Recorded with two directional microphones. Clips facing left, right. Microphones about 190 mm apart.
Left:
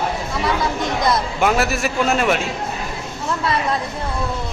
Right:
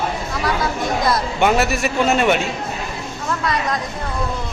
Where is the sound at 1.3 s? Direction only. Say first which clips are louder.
Right 1 dB; centre (ahead or behind).